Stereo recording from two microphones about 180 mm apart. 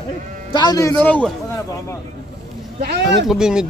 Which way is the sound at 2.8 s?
60° right (ahead or behind).